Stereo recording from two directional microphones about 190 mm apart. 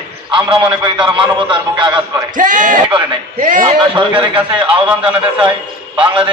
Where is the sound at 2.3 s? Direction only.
45° right (ahead or behind).